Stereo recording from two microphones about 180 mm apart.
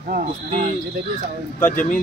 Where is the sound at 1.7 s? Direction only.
50° left (ahead or behind).